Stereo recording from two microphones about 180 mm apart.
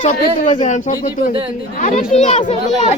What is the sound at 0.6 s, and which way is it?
Speech, 45° left (ahead or behind).